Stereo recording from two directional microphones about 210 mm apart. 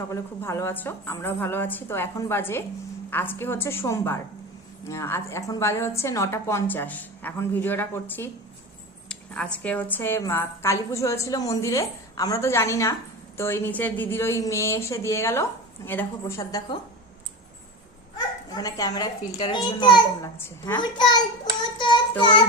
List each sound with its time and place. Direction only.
0.1 s a woman's voice: 15° left (ahead or behind)
18.5 s a child's voice: 15° left (ahead or behind)
21.8 s child singing: 20° left (ahead or behind)